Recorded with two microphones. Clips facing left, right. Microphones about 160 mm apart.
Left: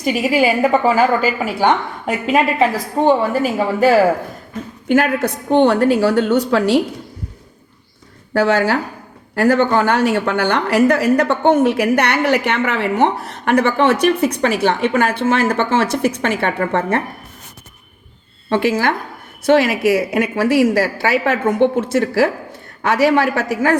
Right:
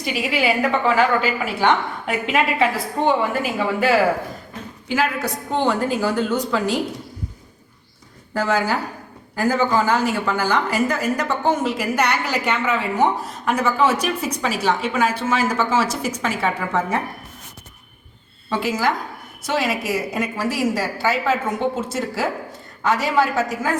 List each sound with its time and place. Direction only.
0.0 s a woman's voice: 45° left (ahead or behind)
4.9 s a woman's voice: 55° left (ahead or behind)
8.3 s a woman's voice: 70° left (ahead or behind)
18.4 s a woman's voice: 60° left (ahead or behind)